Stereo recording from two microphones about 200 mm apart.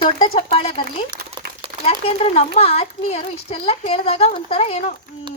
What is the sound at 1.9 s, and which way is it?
A woman's voice, 30° left (ahead or behind).